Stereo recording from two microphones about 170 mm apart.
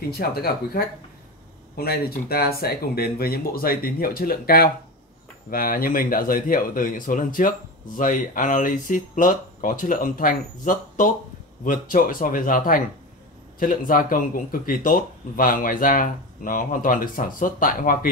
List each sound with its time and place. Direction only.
0.1 s speech: 65° left (ahead or behind)